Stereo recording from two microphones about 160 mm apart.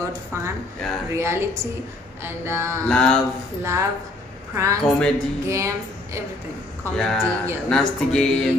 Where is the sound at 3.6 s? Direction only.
15° right (ahead or behind).